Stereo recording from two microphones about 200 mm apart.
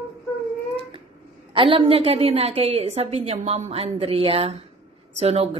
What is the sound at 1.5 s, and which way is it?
Speech, 25° right (ahead or behind).